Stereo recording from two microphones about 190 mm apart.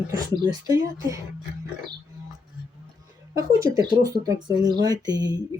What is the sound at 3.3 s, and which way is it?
Speech, 15° right (ahead or behind).